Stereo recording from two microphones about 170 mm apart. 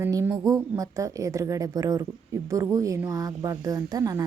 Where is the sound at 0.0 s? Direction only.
15° right (ahead or behind).